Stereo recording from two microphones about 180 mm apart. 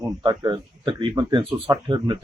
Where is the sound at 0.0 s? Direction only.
25° right (ahead or behind).